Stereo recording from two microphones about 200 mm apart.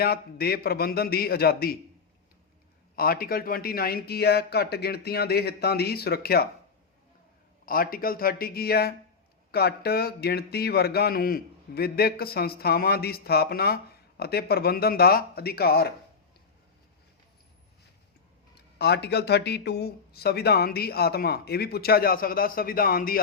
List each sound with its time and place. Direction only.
0.0 s speech: 50° left (ahead or behind)
2.9 s speech: 50° left (ahead or behind)
7.6 s speech: 45° left (ahead or behind)
18.8 s speech: 55° left (ahead or behind)